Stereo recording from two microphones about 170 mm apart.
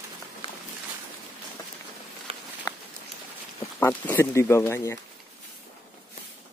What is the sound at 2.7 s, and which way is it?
Patter, 20° left (ahead or behind).